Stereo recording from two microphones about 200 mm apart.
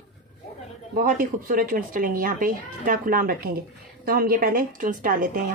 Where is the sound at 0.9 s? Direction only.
45° right (ahead or behind).